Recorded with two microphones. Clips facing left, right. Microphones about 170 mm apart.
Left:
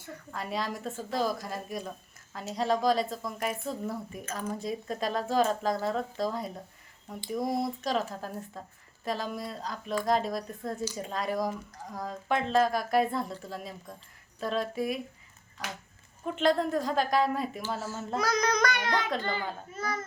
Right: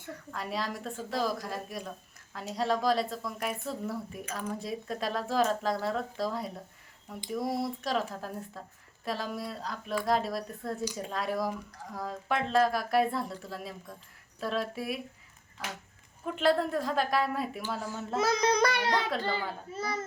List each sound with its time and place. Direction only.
0.3 s speech: centre (ahead or behind)
18.2 s a child's voice: 25° right (ahead or behind)